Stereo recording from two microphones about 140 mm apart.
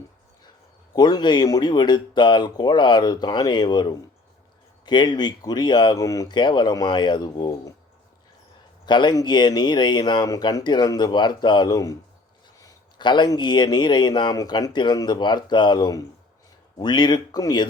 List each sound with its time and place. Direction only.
0.9 s speech: 30° left (ahead or behind)
8.9 s speech: 30° left (ahead or behind)